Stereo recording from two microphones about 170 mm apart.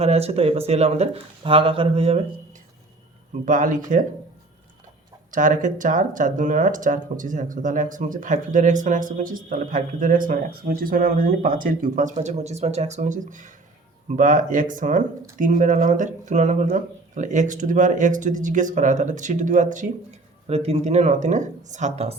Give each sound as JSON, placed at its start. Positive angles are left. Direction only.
{"t": 0.0, "sound": "speech", "side_deg": -35}
{"t": 3.4, "sound": "speech", "side_deg": -50}
{"t": 5.3, "sound": "speech", "side_deg": -50}